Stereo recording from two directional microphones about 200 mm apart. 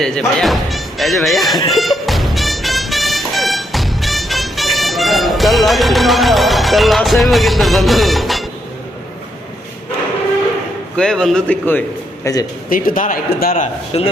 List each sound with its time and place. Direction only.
0.0 s speech: 5° left (ahead or behind)
1.7 s music: centre (ahead or behind)
10.9 s a man's voice: 5° left (ahead or behind)
12.7 s a man's voice: 45° left (ahead or behind)
13.9 s speech: 30° left (ahead or behind)